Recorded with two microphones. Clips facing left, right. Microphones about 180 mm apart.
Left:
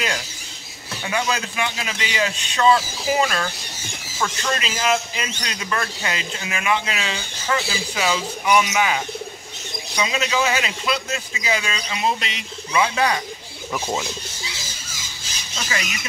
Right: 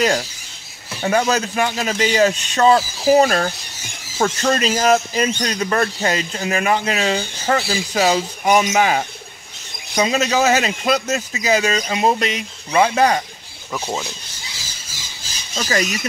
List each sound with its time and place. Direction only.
1.0 s a man's voice: 45° right (ahead or behind)
13.7 s speech: 5° left (ahead or behind)
15.5 s speech: 35° right (ahead or behind)